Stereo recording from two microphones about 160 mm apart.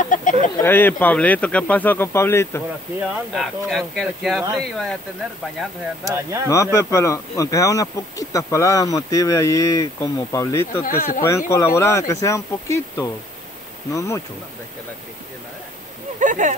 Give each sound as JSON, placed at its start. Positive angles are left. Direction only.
{"t": 0.0, "sound": "bird", "side_deg": 55}
{"t": 0.6, "sound": "speech", "side_deg": 15}
{"t": 3.0, "sound": "speech", "side_deg": 0}
{"t": 6.5, "sound": "speech", "side_deg": 20}
{"t": 11.0, "sound": "speech", "side_deg": 55}
{"t": 11.2, "sound": "speech", "side_deg": 20}
{"t": 16.2, "sound": "a sound", "side_deg": -50}